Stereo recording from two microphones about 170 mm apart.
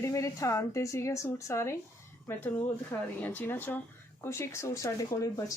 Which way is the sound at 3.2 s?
10° left (ahead or behind).